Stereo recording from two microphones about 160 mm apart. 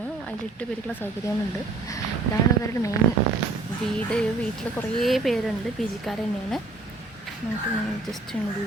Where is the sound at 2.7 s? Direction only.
20° left (ahead or behind).